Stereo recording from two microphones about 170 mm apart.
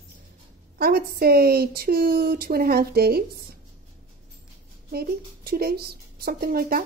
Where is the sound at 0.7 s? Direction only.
65° right (ahead or behind).